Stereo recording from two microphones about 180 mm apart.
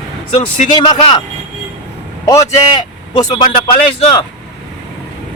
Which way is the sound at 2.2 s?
15° left (ahead or behind).